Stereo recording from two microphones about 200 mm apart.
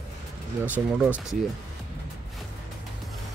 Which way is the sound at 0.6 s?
5° right (ahead or behind).